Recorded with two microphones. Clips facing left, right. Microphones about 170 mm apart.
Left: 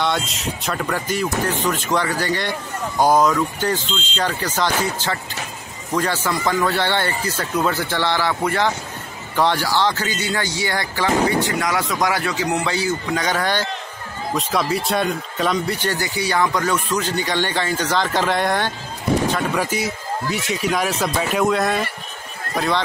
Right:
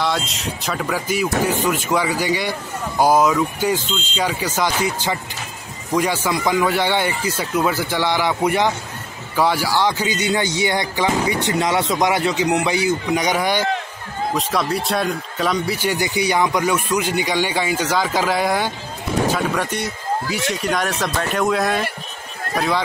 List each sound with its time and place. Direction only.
0.0 s speech: centre (ahead or behind); by 8.7 s 15° right (ahead or behind)
9.3 s speech: 5° right (ahead or behind)
14.3 s speech: centre (ahead or behind)